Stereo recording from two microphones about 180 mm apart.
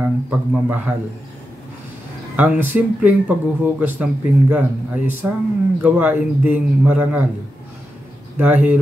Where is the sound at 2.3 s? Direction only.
10° right (ahead or behind).